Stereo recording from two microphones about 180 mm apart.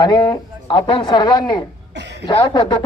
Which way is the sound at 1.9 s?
70° right (ahead or behind).